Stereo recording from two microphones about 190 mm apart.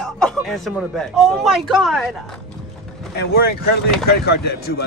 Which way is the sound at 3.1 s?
55° left (ahead or behind).